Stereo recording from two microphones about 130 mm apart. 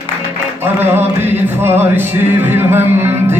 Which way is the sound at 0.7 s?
15° right (ahead or behind).